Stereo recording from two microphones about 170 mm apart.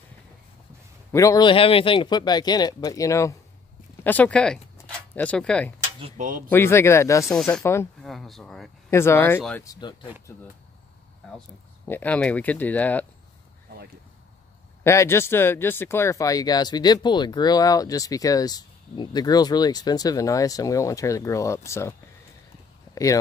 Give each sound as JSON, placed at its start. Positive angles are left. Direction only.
{"t": 1.1, "sound": "speech", "side_deg": 20}
{"t": 1.5, "sound": "speech", "side_deg": 30}
{"t": 5.9, "sound": "speech", "side_deg": -35}
{"t": 6.5, "sound": "speech", "side_deg": 15}
{"t": 8.0, "sound": "speech", "side_deg": 0}
{"t": 8.9, "sound": "speech", "side_deg": 15}
{"t": 11.9, "sound": "speech", "side_deg": 10}
{"t": 14.8, "sound": "speech", "side_deg": 15}